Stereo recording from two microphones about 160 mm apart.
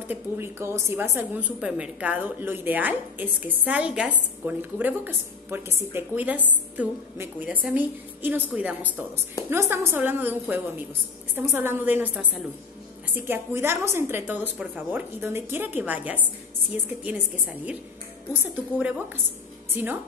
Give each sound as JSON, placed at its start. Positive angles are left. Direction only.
{"t": 0.1, "sound": "a woman's voice", "side_deg": -15}